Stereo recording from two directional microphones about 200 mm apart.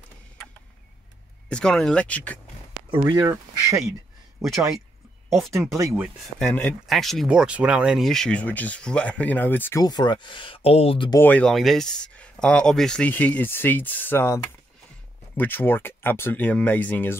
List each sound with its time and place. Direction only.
1.5 s speech: 5° left (ahead or behind)
3.0 s speech: 15° right (ahead or behind)
4.4 s speech: centre (ahead or behind)
6.4 s speech: 5° left (ahead or behind); by 11.1 s 25° left (ahead or behind)
11.1 s speech: 10° left (ahead or behind)